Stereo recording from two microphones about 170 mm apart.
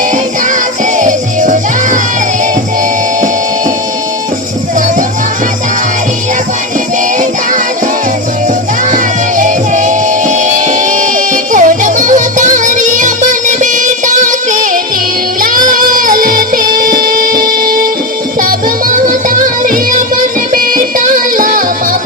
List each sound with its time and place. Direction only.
0.9 s music: 45° right (ahead or behind)
9.4 s music: 45° right (ahead or behind)